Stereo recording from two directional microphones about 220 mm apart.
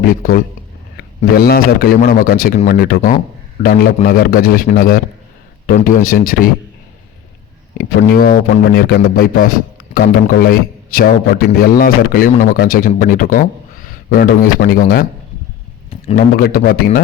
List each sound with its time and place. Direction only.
0.0 s a man's voice: 40° left (ahead or behind)
7.8 s a man's voice: 40° left (ahead or behind)
15.9 s a sound: 30° left (ahead or behind)
16.3 s a man's voice: 40° left (ahead or behind)